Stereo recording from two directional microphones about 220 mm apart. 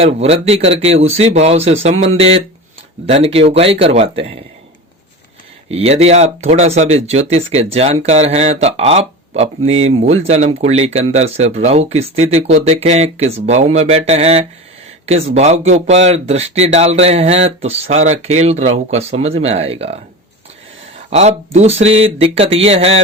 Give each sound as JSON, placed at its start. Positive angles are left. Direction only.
{"t": 0.0, "sound": "speech", "side_deg": -25}
{"t": 5.7, "sound": "speech", "side_deg": -30}
{"t": 21.1, "sound": "speech", "side_deg": -30}